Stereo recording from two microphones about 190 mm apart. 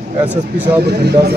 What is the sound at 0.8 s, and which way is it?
Speech, 60° right (ahead or behind).